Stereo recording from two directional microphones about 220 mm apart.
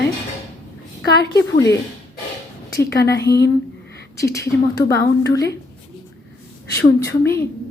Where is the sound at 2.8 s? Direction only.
50° left (ahead or behind).